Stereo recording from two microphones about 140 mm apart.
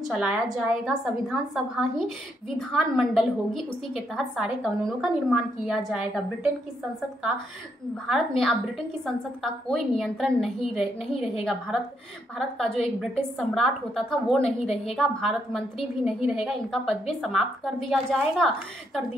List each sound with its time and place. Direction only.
0.1 s a woman's voice: 5° right (ahead or behind)
8.1 s a woman's voice: centre (ahead or behind)
14.4 s a woman's voice: 45° left (ahead or behind)
15.0 s a woman's voice: centre (ahead or behind)